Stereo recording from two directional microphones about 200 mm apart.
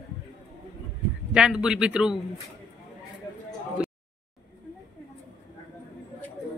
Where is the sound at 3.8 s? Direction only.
5° right (ahead or behind).